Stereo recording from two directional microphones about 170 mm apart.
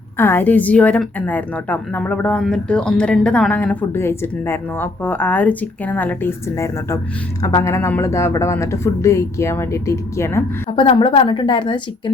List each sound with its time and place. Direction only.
0.2 s a woman's voice: 10° left (ahead or behind)
10.8 s a woman's voice: 30° left (ahead or behind)